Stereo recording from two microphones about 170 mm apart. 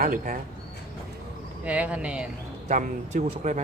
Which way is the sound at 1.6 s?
10° right (ahead or behind).